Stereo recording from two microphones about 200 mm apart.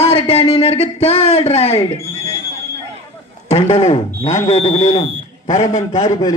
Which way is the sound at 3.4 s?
30° left (ahead or behind).